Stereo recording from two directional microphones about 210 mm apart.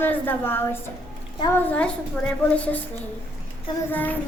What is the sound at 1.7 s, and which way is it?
A woman's voice, 5° left (ahead or behind).